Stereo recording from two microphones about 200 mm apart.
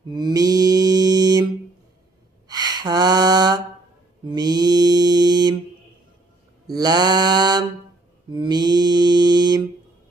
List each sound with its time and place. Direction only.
0.1 s mantra: 20° right (ahead or behind)
2.4 s a sound: 20° right (ahead or behind)
4.3 s mantra: 20° right (ahead or behind)
6.7 s mantra: 20° right (ahead or behind)